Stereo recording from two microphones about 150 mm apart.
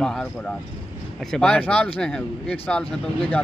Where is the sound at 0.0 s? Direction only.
5° left (ahead or behind).